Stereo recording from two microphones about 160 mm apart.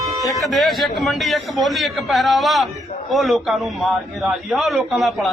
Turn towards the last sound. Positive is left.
turn(degrees=0)  # may be behind; listen again after turning